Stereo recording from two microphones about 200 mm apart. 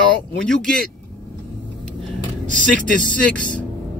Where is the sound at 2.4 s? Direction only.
40° right (ahead or behind).